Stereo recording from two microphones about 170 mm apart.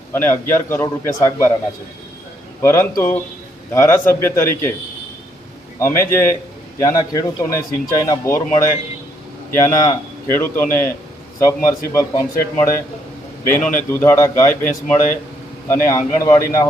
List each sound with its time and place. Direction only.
0.1 s a man's voice: 10° left (ahead or behind)
2.6 s a man's voice: 15° left (ahead or behind)
5.8 s a man's voice: 15° left (ahead or behind)
9.6 s a man's voice: 20° left (ahead or behind)